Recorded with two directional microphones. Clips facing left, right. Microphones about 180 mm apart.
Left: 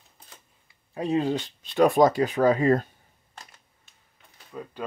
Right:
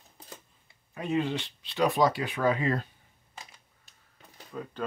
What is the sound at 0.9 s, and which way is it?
Speech, 35° left (ahead or behind).